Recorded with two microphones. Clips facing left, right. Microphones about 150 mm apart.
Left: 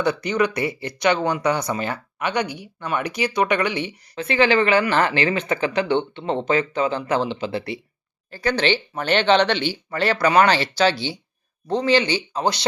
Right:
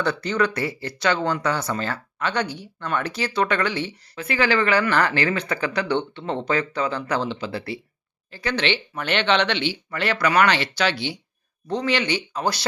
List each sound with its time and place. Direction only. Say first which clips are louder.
0.0 s speech: left 2 dB; 15° left (ahead or behind)
4.1 s speech: left 4 dB; 25° left (ahead or behind)
8.3 s speech: left 3 dB; 40° left (ahead or behind); by 12.6 s 25° left (ahead or behind)